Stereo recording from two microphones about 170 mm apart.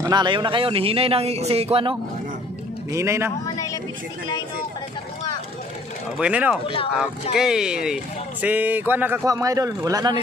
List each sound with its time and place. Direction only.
0.0 s speech: 25° right (ahead or behind)
2.9 s speech: 15° right (ahead or behind)
3.4 s a sound: 20° left (ahead or behind)
6.1 s speech: 5° right (ahead or behind); by 10.2 s 25° right (ahead or behind)